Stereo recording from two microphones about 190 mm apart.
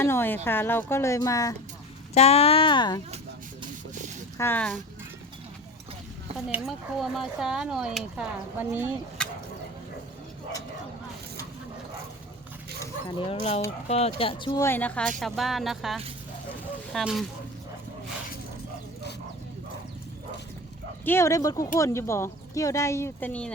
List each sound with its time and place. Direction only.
0.0 s speech: 10° left (ahead or behind)
2.1 s speech: 30° left (ahead or behind)
4.4 s speech: 10° left (ahead or behind)
6.3 s speech: centre (ahead or behind)
9.2 s a sound: 5° left (ahead or behind)
13.8 s speech: 35° left (ahead or behind)
14.6 s speech: 10° left (ahead or behind)
21.0 s speech: 10° left (ahead or behind)